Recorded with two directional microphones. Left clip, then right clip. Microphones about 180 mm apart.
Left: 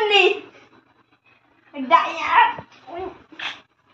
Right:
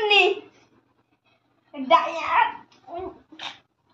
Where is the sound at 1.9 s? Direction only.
30° right (ahead or behind).